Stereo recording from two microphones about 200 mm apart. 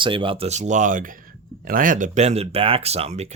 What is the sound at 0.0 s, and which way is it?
Speech, 25° right (ahead or behind).